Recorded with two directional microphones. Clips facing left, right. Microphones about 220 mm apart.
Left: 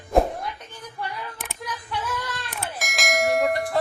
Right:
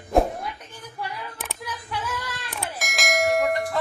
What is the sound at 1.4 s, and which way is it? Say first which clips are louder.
Church bell: even; 5° right (ahead or behind).